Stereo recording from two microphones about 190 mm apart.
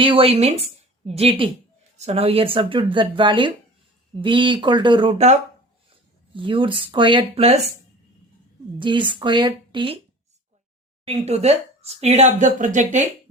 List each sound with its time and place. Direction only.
0.0 s speech: 30° right (ahead or behind)
8.8 s speech: 25° right (ahead or behind)
11.0 s speech: 35° right (ahead or behind)